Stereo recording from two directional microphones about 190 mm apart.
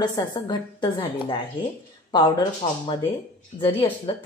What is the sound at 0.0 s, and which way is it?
A woman's voice, 20° left (ahead or behind).